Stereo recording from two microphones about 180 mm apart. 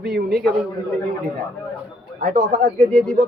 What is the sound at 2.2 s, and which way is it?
Speech, 45° right (ahead or behind).